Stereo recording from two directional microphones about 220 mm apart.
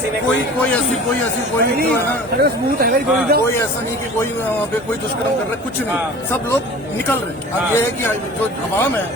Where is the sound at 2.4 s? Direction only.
45° right (ahead or behind).